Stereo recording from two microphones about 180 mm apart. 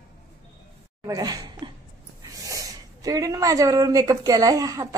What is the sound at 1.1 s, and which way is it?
Speech, 20° right (ahead or behind).